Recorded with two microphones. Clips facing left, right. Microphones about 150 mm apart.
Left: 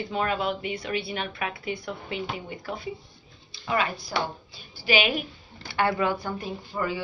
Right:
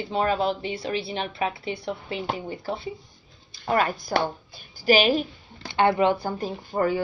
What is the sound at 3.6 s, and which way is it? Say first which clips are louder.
A woman's voice: right 4 dB; 50° right (ahead or behind).